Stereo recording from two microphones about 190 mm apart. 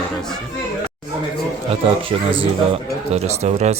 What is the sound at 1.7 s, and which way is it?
Speech, 30° right (ahead or behind).